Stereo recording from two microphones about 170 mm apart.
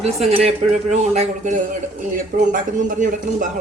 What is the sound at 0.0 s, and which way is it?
A man's voice, 40° right (ahead or behind).